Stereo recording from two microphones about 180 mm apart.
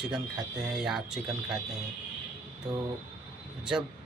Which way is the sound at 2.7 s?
20° right (ahead or behind).